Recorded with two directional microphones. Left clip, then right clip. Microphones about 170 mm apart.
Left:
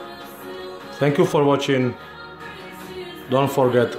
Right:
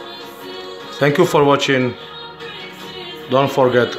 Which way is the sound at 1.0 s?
Centre (ahead or behind).